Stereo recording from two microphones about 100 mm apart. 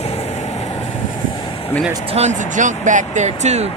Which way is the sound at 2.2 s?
90° right.